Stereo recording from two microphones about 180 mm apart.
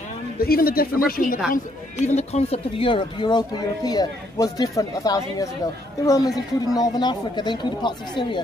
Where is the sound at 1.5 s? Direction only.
40° left (ahead or behind).